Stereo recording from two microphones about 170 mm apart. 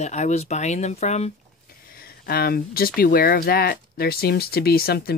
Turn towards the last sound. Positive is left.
turn(degrees=65)  # may be behind; listen again after turning